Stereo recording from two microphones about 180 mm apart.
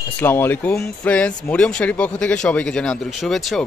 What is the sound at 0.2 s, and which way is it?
Speech, 10° left (ahead or behind).